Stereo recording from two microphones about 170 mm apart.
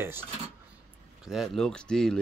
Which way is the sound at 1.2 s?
Centre (ahead or behind).